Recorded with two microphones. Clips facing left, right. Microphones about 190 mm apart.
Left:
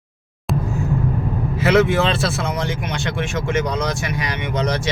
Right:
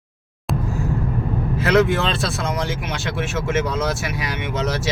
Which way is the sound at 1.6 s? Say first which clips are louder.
Left 2 dB; 5° left (ahead or behind).